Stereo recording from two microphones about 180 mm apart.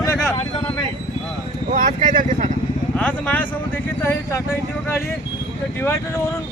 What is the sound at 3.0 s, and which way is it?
Speech, 10° left (ahead or behind).